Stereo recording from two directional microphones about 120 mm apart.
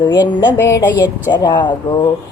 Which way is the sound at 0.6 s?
25° left (ahead or behind).